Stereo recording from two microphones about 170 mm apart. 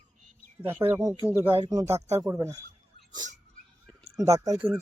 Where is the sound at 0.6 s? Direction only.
10° right (ahead or behind).